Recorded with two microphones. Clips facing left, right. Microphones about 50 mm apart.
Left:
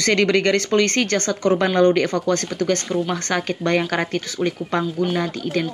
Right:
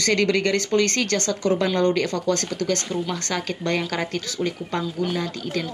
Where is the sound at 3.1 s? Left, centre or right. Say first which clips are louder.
Left 4 dB; left.